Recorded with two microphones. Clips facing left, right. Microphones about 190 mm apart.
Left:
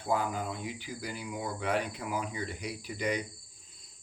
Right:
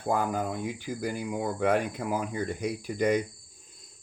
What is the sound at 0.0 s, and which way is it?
Speech, 45° right (ahead or behind).